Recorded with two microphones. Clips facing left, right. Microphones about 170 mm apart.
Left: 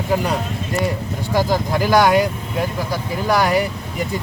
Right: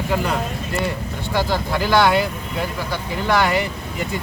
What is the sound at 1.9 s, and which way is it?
Speech, 45° left (ahead or behind).